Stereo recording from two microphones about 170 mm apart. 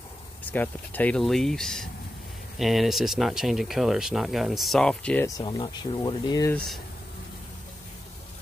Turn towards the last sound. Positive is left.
turn(degrees=5)  # may be behind; listen again after turning